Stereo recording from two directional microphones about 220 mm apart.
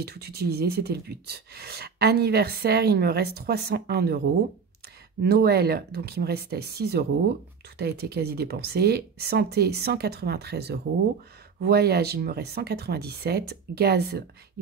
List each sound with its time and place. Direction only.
0.0 s speech: 45° right (ahead or behind)
5.2 s speech: 45° right (ahead or behind)